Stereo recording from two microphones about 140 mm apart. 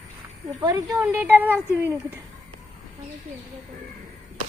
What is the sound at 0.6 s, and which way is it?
Speech, 25° right (ahead or behind).